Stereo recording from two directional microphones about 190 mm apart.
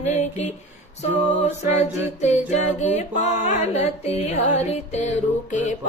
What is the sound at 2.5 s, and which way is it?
Music, 35° left (ahead or behind).